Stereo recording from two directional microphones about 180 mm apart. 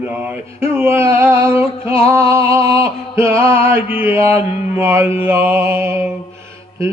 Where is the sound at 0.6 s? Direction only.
15° right (ahead or behind).